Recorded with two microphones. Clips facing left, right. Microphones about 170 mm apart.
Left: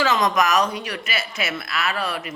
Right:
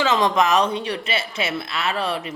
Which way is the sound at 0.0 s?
25° right (ahead or behind).